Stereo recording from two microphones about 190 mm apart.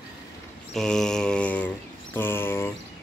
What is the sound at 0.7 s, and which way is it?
Mantra, 5° left (ahead or behind).